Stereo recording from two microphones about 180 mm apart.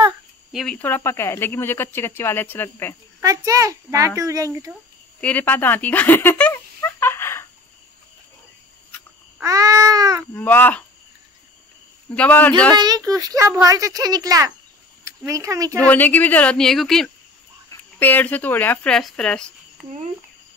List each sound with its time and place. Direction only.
0.5 s speech: centre (ahead or behind)
0.7 s speech: 10° left (ahead or behind)
3.2 s a child's voice: 15° right (ahead or behind)
5.2 s a sound: 10° left (ahead or behind)
9.4 s babbling: 20° right (ahead or behind)
10.2 s speech: 10° left (ahead or behind)
12.2 s speech: 10° left (ahead or behind)
12.7 s a child's voice: 20° right (ahead or behind)
15.8 s speech: 10° left (ahead or behind)